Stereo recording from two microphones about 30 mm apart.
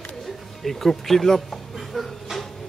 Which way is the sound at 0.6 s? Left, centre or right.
Centre.